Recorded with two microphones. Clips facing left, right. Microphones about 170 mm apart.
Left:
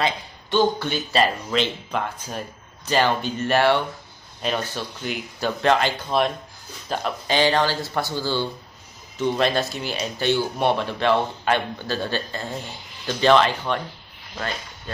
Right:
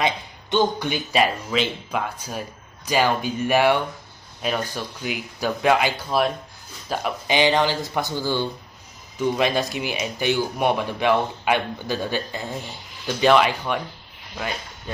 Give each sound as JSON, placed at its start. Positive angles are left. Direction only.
{"t": 0.0, "sound": "speech", "side_deg": -20}